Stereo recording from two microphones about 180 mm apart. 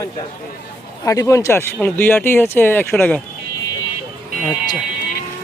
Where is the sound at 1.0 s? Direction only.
20° left (ahead or behind).